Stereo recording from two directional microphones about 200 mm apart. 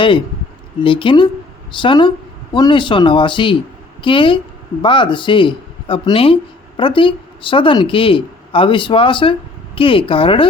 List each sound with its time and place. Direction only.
0.8 s speech: 25° left (ahead or behind)